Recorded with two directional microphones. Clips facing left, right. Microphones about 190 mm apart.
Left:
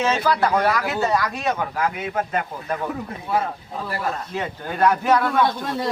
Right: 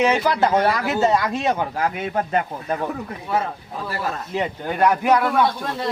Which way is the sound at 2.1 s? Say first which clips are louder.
Right 2 dB; 35° right (ahead or behind).